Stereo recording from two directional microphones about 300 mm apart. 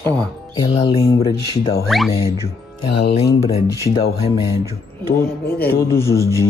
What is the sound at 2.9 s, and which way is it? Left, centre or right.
Speech, left.